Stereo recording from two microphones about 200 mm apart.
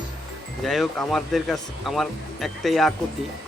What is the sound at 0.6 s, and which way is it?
Speech, centre (ahead or behind).